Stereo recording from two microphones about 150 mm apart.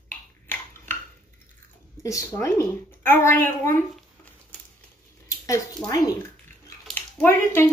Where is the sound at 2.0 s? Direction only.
20° left (ahead or behind).